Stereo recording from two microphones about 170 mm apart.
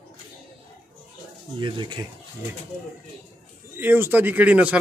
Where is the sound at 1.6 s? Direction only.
30° right (ahead or behind).